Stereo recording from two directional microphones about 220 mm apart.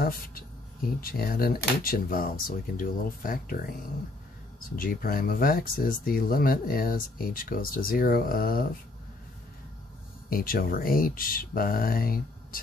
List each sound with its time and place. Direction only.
0.0 s speech: 40° left (ahead or behind)
4.7 s speech: 40° left (ahead or behind)
10.3 s speech: 40° left (ahead or behind)